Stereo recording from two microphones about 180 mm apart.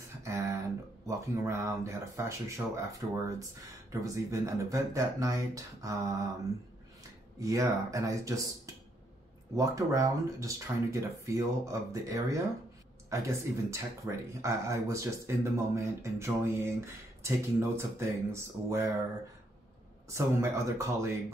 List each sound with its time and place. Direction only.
0.2 s a sound: 15° right (ahead or behind)
1.0 s speech: 15° right (ahead or behind)
7.3 s speech: 20° right (ahead or behind)
9.6 s speech: 20° right (ahead or behind)
20.1 s speech: 15° right (ahead or behind)